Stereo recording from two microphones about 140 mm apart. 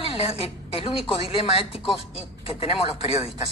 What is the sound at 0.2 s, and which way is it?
Speech, 40° left (ahead or behind).